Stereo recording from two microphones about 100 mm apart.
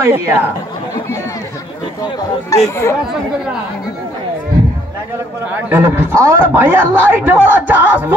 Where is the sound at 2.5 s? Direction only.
30° left (ahead or behind).